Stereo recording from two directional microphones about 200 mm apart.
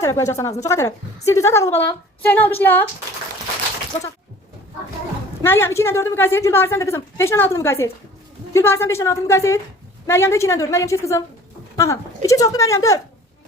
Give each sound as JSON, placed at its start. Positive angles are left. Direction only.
{"t": 0.0, "sound": "a woman's voice", "side_deg": 15}
{"t": 5.4, "sound": "a woman's voice", "side_deg": 10}